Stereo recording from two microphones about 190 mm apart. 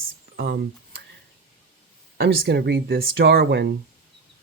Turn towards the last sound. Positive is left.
turn(degrees=-60)  # may be behind; listen again after turning